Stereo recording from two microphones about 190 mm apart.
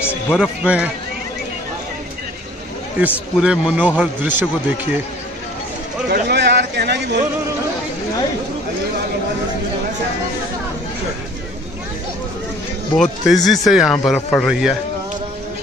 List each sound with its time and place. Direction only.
0.0 s music: 10° left (ahead or behind)
0.4 s speech: 5° right (ahead or behind)
3.0 s a man's voice: 5° right (ahead or behind)
6.0 s speech: 60° right (ahead or behind)
12.9 s speech: centre (ahead or behind)